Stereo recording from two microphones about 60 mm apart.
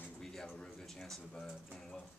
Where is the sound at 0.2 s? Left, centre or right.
Centre.